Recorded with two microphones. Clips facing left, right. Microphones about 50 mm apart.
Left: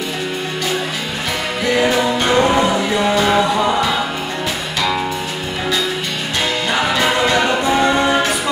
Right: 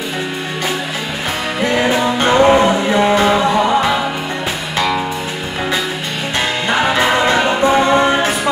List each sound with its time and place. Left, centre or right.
1.6 s music: right
6.9 s music: right